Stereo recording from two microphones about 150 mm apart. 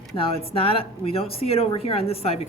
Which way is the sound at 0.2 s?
40° left (ahead or behind).